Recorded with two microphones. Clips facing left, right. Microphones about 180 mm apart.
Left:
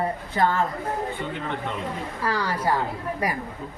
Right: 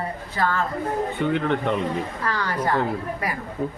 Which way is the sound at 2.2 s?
10° left (ahead or behind).